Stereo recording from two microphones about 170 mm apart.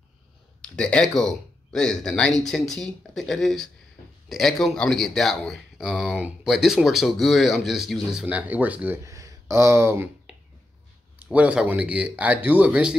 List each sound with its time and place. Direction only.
0.7 s speech: 5° left (ahead or behind); by 10.0 s 15° right (ahead or behind)
11.1 s speech: 5° right (ahead or behind)